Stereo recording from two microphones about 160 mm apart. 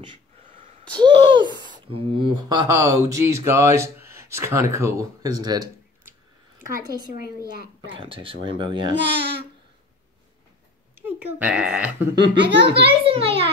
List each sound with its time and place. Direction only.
0.5 s a sound: 55° right (ahead or behind)
0.9 s speech: 30° right (ahead or behind)
7.9 s speech: 35° right (ahead or behind)
8.9 s speech: 90° right
11.0 s speech: 10° right (ahead or behind)
12.2 s speech: 90° right
13.0 s speech: 35° right (ahead or behind)